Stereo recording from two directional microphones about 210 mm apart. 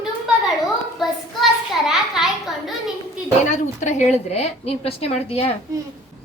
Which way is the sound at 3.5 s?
35° left (ahead or behind).